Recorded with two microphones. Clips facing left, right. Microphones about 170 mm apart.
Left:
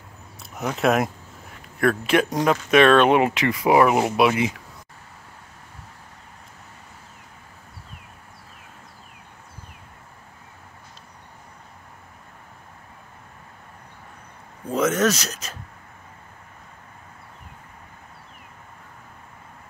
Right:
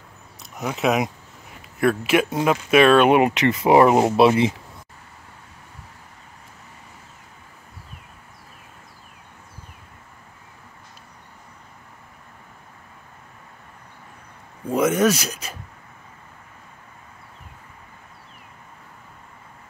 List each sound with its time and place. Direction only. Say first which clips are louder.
0.7 s speech: left 1 dB; centre (ahead or behind); by 4.5 s 25° right (ahead or behind)
14.7 s speech: right 2 dB; 10° right (ahead or behind)